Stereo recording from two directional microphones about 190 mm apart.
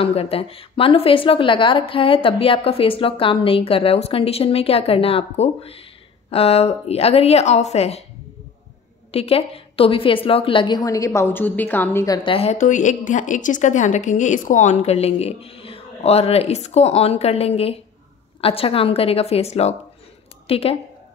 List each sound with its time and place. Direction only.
0.0 s a woman's voice: 30° left (ahead or behind)
9.1 s a woman's voice: 30° left (ahead or behind); by 12.2 s 15° left (ahead or behind)
12.2 s a woman's voice: 30° left (ahead or behind)